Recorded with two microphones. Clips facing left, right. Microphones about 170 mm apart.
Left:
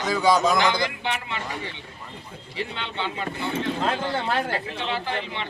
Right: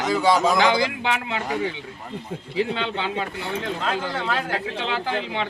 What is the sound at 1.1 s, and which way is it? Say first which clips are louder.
Speech: right 4 dB; 90° right.